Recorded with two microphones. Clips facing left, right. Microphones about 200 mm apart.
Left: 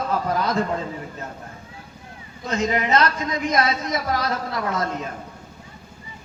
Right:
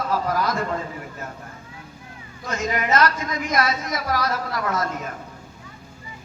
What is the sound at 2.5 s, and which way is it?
A man's voice, 25° left (ahead or behind).